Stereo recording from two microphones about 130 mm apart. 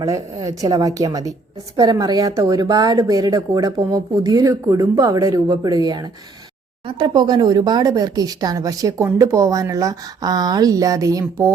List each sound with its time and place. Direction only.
0.0 s speech: 25° right (ahead or behind)